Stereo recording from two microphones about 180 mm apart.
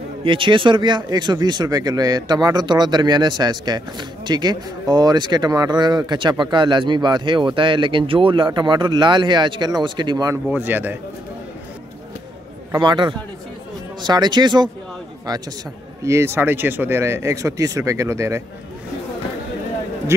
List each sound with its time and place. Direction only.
0.2 s speech: 30° right (ahead or behind); by 11.0 s 10° right (ahead or behind)
12.7 s speech: 25° right (ahead or behind)
16.0 s speech: 15° right (ahead or behind)
20.1 s speech: 15° right (ahead or behind)